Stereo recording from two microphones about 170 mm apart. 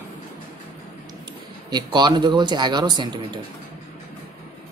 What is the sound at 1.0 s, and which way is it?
Speech, 25° right (ahead or behind).